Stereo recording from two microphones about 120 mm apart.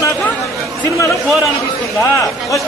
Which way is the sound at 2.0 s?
25° left (ahead or behind).